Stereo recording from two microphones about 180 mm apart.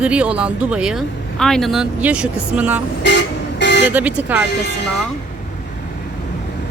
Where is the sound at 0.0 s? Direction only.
5° right (ahead or behind).